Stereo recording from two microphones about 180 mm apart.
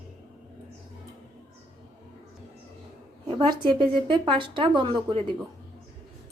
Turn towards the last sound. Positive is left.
turn(degrees=-25)  # may be behind; listen again after turning